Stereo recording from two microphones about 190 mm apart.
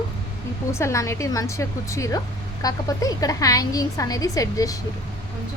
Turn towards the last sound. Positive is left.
turn(degrees=20)  # may be behind; listen again after turning